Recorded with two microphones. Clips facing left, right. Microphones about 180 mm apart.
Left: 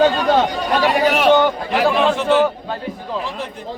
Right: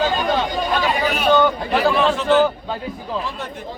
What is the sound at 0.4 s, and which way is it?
Chatter, 80° left.